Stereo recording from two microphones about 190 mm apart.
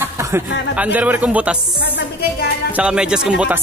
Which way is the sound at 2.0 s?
55° left (ahead or behind).